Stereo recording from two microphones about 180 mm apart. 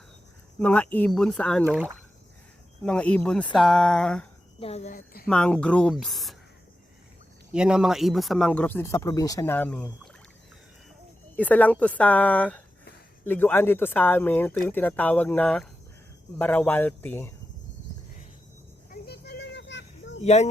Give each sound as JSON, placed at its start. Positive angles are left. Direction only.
{"t": 0.6, "sound": "speech", "side_deg": 10}
{"t": 2.8, "sound": "speech", "side_deg": 5}
{"t": 4.6, "sound": "speech", "side_deg": 35}
{"t": 4.9, "sound": "speech", "side_deg": 55}
{"t": 5.3, "sound": "speech", "side_deg": 5}
{"t": 7.5, "sound": "speech", "side_deg": -5}
{"t": 11.3, "sound": "speech", "side_deg": 10}
{"t": 18.9, "sound": "a sound", "side_deg": 60}
{"t": 20.2, "sound": "speech", "side_deg": 40}